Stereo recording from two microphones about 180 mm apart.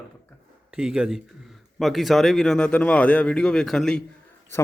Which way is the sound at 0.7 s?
5° right (ahead or behind).